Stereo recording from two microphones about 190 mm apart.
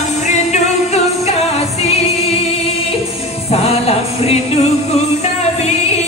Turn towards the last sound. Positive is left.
turn(degrees=35)  # may be behind; listen again after turning